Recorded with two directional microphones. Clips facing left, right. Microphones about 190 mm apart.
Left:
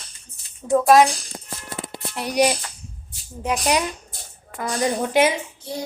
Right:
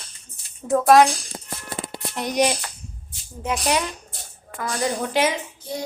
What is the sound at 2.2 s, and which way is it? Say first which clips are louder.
Speech: left 1 dB; 10° left (ahead or behind).